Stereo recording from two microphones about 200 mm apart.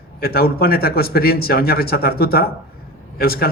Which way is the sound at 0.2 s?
50° left (ahead or behind).